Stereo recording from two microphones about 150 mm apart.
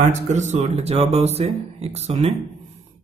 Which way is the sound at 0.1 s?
50° right (ahead or behind).